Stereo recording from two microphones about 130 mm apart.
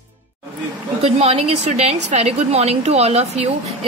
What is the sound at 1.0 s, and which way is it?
A woman's voice, 50° right (ahead or behind).